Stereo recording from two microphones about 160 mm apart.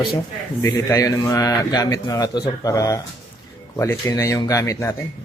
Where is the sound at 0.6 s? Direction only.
20° left (ahead or behind).